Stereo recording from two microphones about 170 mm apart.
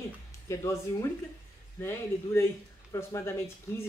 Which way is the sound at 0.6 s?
15° left (ahead or behind).